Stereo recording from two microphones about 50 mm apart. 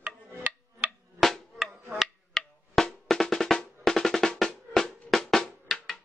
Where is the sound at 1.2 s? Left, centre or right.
Centre.